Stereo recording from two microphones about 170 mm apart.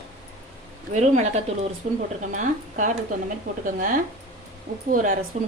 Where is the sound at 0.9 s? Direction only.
45° right (ahead or behind).